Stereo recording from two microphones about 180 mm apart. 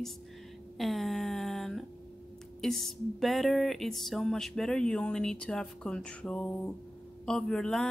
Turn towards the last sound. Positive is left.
turn(degrees=5)  # may be behind; listen again after turning